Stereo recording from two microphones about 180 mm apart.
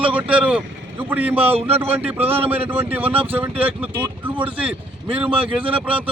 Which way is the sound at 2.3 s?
35° right (ahead or behind).